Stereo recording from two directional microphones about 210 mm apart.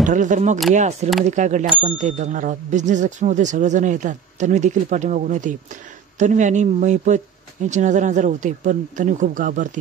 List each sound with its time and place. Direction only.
0.0 s speech: 35° right (ahead or behind)